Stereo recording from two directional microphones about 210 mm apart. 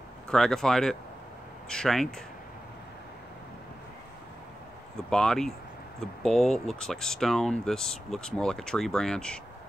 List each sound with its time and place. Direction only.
0.3 s speech: centre (ahead or behind)
4.9 s speech: 5° left (ahead or behind)